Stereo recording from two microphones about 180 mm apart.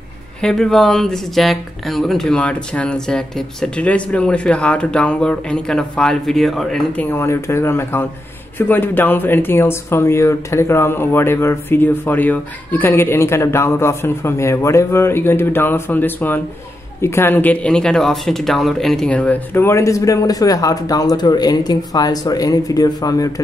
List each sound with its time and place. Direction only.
0.4 s speech: 5° left (ahead or behind); by 23.4 s 20° left (ahead or behind)